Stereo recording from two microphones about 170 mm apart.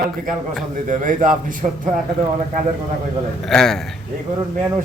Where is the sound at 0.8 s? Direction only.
50° right (ahead or behind).